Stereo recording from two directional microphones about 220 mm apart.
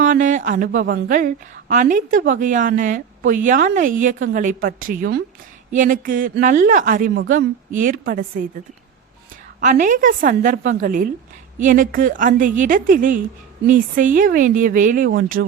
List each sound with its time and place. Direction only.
0.0 s a sound: 35° right (ahead or behind)
0.9 s a woman's voice: 40° right (ahead or behind)
9.6 s a woman's voice: 35° right (ahead or behind)
15.3 s speech: 50° right (ahead or behind)